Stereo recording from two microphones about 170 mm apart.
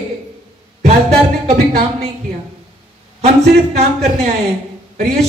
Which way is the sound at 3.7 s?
40° right (ahead or behind).